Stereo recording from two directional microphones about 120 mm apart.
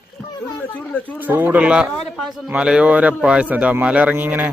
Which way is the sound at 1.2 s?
15° right (ahead or behind).